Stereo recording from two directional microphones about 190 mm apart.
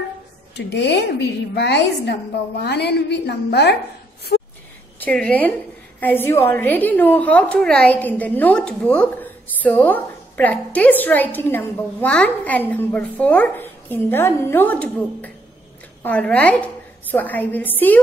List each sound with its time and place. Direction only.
0.6 s a woman's voice: 60° left (ahead or behind)
4.3 s a sound: 60° left (ahead or behind)
5.0 s a woman's voice: 5° left (ahead or behind)